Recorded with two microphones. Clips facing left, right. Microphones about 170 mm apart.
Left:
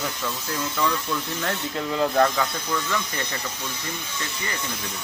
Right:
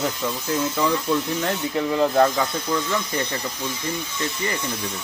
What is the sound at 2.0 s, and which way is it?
Speech, 15° right (ahead or behind).